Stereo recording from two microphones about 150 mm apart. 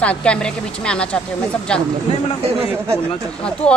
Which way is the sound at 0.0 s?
10° left (ahead or behind).